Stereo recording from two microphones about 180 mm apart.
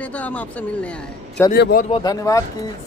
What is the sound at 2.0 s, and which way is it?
Speech, 20° left (ahead or behind).